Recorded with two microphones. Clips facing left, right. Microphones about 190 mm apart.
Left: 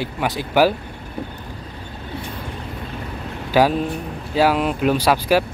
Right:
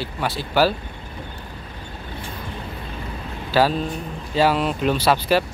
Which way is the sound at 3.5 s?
15° left (ahead or behind).